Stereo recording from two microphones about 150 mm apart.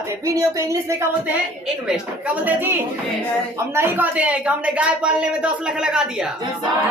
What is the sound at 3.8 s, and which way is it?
A woman's voice, 10° right (ahead or behind).